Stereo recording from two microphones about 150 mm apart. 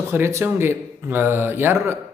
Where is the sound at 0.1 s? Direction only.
15° right (ahead or behind).